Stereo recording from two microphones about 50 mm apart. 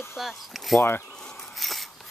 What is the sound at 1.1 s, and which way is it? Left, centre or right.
Zipper, centre.